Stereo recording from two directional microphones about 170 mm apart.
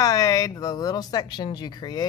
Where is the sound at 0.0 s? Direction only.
20° left (ahead or behind).